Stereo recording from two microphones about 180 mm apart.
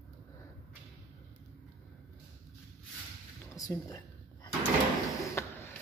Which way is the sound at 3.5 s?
20° left (ahead or behind).